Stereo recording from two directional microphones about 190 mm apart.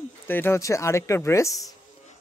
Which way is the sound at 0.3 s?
10° left (ahead or behind).